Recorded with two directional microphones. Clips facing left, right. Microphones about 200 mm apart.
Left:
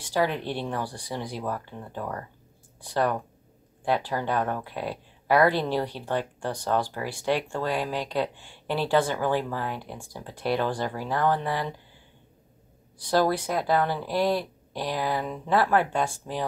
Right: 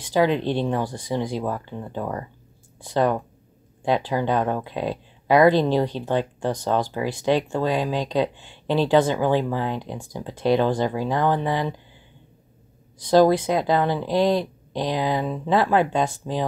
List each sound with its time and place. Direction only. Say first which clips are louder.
0.0 s speech: right 6 dB; 20° right (ahead or behind)
13.0 s speech: right 7 dB; 20° right (ahead or behind)